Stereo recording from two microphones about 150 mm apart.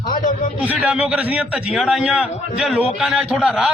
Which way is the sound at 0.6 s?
10° right (ahead or behind).